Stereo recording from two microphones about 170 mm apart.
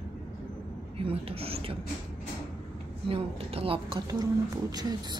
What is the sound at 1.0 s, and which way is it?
Speech, 35° right (ahead or behind).